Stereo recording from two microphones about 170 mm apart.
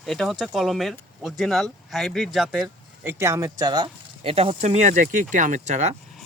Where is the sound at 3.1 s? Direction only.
15° right (ahead or behind).